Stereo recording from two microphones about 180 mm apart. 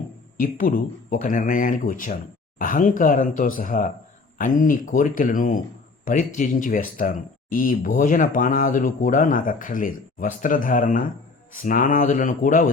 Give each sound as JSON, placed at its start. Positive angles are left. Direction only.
{"t": 0.3, "sound": "speech", "side_deg": 50}